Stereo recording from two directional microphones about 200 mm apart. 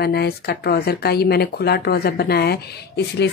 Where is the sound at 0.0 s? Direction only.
50° left (ahead or behind).